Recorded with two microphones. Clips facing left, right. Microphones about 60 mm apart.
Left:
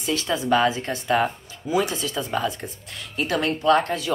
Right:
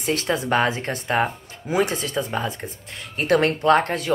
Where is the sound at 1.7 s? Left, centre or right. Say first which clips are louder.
Right 1 dB; right.